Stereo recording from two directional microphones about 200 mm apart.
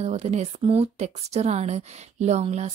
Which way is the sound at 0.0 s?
35° right (ahead or behind).